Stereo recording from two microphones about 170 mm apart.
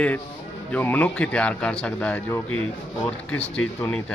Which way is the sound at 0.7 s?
10° left (ahead or behind).